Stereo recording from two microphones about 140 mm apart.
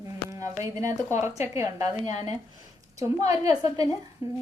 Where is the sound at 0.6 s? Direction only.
20° right (ahead or behind).